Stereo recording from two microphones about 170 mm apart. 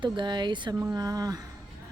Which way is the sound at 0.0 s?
25° right (ahead or behind).